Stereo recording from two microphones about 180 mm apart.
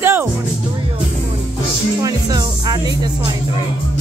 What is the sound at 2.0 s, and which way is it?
Music, 20° right (ahead or behind).